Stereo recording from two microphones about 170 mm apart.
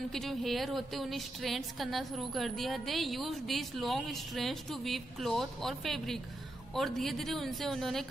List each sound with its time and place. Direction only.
0.1 s a woman's voice: centre (ahead or behind)